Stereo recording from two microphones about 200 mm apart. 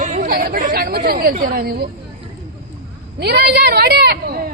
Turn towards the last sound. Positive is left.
turn(degrees=-50)  # may be behind; listen again after turning